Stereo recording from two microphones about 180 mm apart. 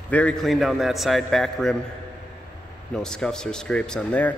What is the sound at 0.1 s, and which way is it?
Speech, 5° left (ahead or behind).